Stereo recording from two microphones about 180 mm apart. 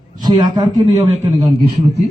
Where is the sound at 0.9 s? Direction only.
40° right (ahead or behind).